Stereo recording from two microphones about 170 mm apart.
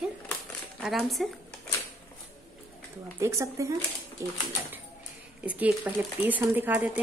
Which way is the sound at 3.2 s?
15° right (ahead or behind).